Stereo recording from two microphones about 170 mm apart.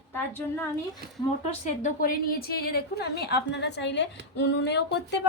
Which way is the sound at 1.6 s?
50° left (ahead or behind).